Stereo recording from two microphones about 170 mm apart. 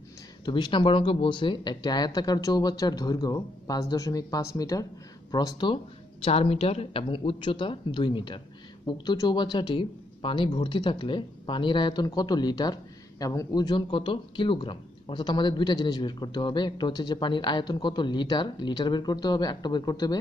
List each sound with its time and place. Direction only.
0.5 s speech: 25° left (ahead or behind)
6.2 s a woman's voice: 35° left (ahead or behind)